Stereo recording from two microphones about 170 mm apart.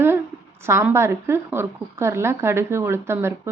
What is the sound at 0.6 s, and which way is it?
A woman's voice, 15° right (ahead or behind).